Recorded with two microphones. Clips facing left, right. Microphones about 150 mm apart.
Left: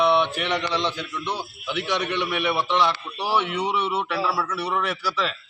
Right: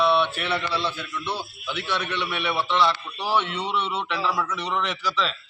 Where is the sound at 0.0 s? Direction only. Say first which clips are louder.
Left 1 dB; 15° left (ahead or behind).